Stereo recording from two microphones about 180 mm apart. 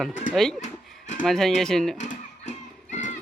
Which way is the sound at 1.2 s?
Centre (ahead or behind).